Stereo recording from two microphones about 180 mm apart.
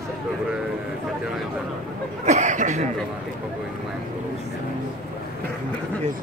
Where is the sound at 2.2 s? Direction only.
40° right (ahead or behind).